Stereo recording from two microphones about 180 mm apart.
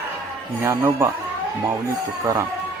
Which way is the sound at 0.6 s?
15° right (ahead or behind).